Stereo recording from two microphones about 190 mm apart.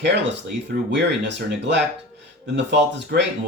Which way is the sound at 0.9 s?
65° right (ahead or behind).